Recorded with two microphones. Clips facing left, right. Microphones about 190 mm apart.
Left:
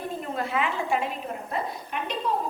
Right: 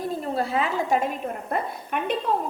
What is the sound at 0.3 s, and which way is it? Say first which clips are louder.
A woman's voice: right 2 dB; 35° right (ahead or behind).